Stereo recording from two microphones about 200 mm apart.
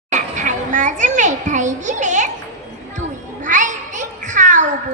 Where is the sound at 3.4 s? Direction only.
40° right (ahead or behind).